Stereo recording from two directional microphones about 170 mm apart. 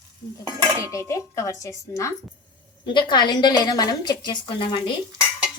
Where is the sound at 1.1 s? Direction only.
20° left (ahead or behind).